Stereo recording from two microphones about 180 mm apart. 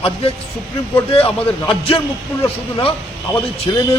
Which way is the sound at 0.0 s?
30° left (ahead or behind).